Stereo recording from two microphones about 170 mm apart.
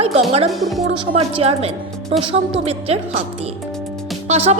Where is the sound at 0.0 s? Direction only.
35° right (ahead or behind).